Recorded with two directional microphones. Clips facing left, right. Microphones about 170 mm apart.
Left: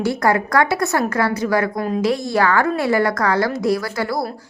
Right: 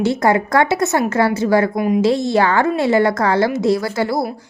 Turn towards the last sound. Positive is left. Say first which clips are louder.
# right 3 dB
turn(degrees=-25)  # may be behind; listen again after turning